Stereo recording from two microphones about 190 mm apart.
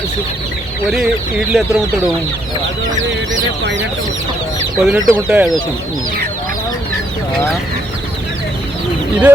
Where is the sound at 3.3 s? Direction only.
70° right (ahead or behind).